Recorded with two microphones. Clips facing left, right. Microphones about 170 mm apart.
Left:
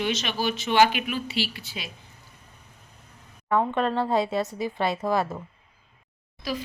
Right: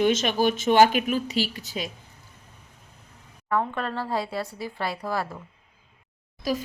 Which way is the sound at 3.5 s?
20° left (ahead or behind).